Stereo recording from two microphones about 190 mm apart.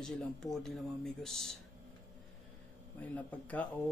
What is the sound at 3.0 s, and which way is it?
Mantra, 10° left (ahead or behind).